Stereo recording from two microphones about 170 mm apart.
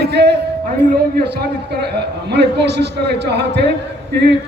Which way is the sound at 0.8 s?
75° right (ahead or behind).